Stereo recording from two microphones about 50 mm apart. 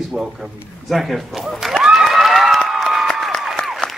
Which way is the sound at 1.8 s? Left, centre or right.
Centre.